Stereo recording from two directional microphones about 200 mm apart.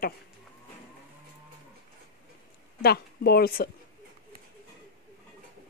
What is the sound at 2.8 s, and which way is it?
Speech, 50° left (ahead or behind).